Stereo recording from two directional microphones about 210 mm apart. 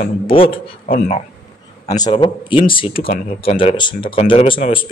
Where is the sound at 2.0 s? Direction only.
20° left (ahead or behind).